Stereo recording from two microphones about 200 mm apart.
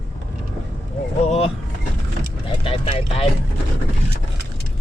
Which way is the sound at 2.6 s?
30° left (ahead or behind).